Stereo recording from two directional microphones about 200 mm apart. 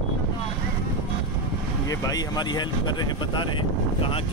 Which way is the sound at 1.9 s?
20° left (ahead or behind).